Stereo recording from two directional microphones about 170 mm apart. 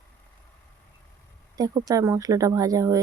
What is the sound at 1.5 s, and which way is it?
Speech, 20° right (ahead or behind).